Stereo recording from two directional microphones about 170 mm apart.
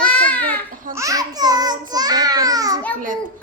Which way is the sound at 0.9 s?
20° right (ahead or behind).